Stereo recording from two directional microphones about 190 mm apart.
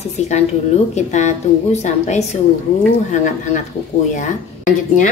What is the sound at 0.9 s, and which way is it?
A woman's voice, 40° left (ahead or behind).